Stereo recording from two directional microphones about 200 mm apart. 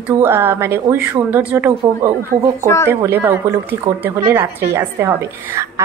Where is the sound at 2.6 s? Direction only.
15° left (ahead or behind).